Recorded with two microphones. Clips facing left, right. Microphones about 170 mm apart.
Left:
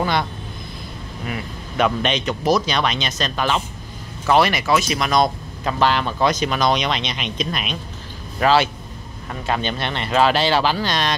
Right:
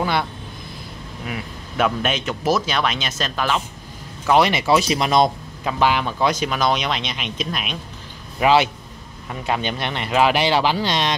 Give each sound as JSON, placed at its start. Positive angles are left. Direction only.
{"t": 0.0, "sound": "speech", "side_deg": -5}
{"t": 4.3, "sound": "speech", "side_deg": -20}
{"t": 5.6, "sound": "speech", "side_deg": -10}
{"t": 8.4, "sound": "speech", "side_deg": -15}